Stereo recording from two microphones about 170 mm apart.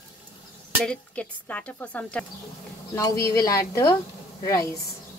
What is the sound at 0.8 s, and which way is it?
Speech, 5° left (ahead or behind).